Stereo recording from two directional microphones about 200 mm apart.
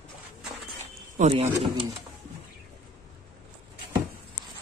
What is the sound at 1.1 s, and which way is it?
Speech, 35° right (ahead or behind).